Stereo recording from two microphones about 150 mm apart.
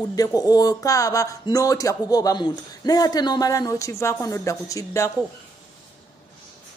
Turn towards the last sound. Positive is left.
turn(degrees=20)  # may be behind; listen again after turning